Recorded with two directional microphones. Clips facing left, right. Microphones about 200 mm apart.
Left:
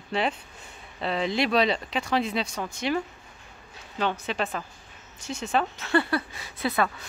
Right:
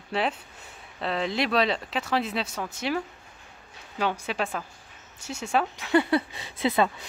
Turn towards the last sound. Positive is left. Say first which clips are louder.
# right 2 dB
turn(degrees=-20)  # may be behind; listen again after turning